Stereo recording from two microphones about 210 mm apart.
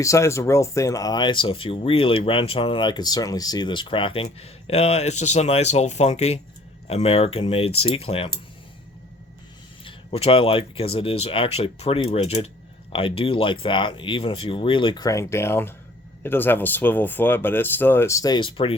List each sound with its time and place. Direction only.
0.0 s speech: 15° left (ahead or behind)
9.8 s speech: 25° left (ahead or behind)